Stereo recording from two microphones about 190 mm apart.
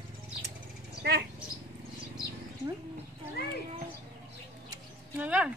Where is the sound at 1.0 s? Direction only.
60° right (ahead or behind).